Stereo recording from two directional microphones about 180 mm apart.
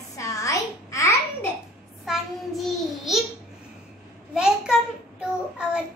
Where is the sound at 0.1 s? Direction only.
20° left (ahead or behind).